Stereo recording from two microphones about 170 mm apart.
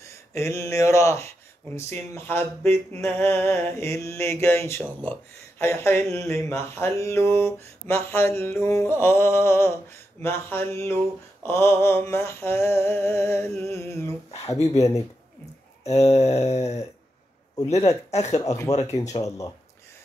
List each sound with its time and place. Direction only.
0.0 s speech: 15° left (ahead or behind)
1.8 s mantra: 15° left (ahead or behind)
14.5 s speech: 20° left (ahead or behind)
15.8 s a sound: 40° left (ahead or behind)
18.9 s speech: 20° left (ahead or behind)